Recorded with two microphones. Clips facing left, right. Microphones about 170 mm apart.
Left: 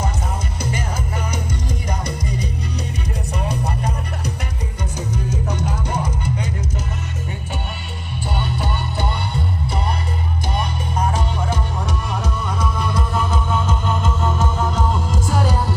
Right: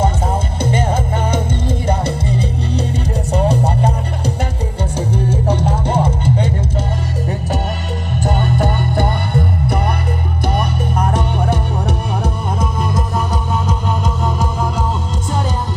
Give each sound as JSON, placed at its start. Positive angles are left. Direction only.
{"t": 0.0, "sound": "music", "side_deg": -30}
{"t": 8.2, "sound": "music", "side_deg": -50}